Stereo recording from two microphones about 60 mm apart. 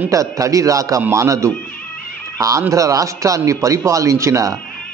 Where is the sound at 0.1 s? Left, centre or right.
Right.